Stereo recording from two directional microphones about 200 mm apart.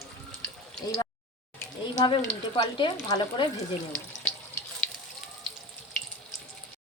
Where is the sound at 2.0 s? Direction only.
20° left (ahead or behind).